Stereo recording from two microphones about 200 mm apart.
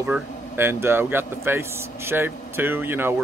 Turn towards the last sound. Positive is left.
turn(degrees=-10)  # may be behind; listen again after turning